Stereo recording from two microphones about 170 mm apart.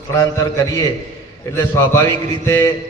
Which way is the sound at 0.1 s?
20° left (ahead or behind).